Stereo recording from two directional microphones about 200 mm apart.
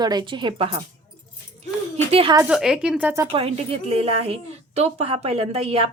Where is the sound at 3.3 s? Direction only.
30° right (ahead or behind).